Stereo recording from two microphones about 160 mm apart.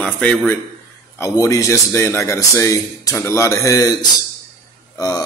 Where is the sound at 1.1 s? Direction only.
20° left (ahead or behind).